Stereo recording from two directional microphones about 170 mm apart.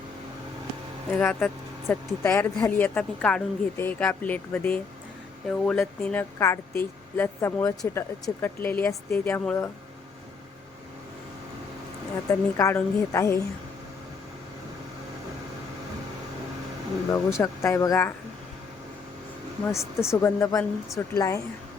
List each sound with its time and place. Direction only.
1.2 s speech: 5° left (ahead or behind)
12.3 s speech: 15° left (ahead or behind)
17.1 s speech: 15° left (ahead or behind)
20.0 s speech: 15° left (ahead or behind)